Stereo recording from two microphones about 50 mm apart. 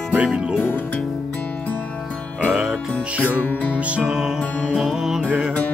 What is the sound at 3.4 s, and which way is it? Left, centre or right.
Music, left.